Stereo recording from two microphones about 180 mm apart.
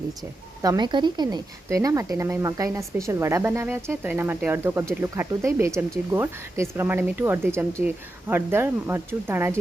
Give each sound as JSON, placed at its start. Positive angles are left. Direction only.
{"t": 0.6, "sound": "a woman's voice", "side_deg": -20}